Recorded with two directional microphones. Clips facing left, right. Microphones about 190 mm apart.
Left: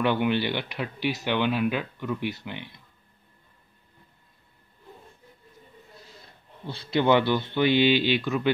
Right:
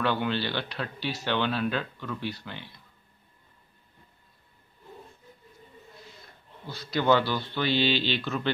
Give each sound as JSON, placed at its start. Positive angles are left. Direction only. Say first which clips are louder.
{"t": 0.0, "sound": "speech", "louder": "left 4 dB", "side_deg": 15}
{"t": 6.7, "sound": "speech", "louder": "left 2 dB", "side_deg": 25}